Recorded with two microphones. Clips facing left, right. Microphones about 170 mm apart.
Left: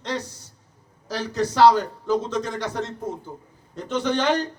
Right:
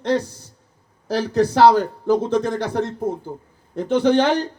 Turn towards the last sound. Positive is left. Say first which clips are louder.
# right 6 dB
turn(degrees=-55)  # may be behind; listen again after turning